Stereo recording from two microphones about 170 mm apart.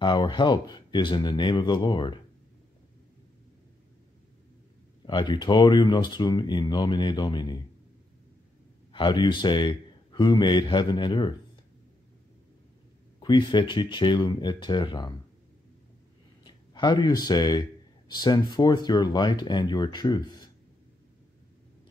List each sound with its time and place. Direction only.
0.0 s speech: 30° left (ahead or behind)
5.0 s speech: 25° left (ahead or behind)
8.9 s speech: 25° left (ahead or behind)
13.2 s speech: 25° left (ahead or behind)
16.4 s speech: 25° left (ahead or behind)